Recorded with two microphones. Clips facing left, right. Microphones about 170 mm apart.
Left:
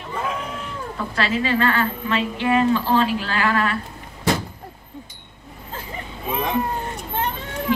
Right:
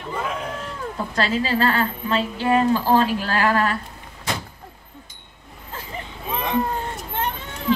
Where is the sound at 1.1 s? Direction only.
35° right (ahead or behind).